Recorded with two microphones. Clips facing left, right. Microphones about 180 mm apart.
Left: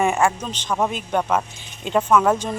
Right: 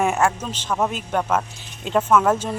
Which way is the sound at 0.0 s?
5° right (ahead or behind).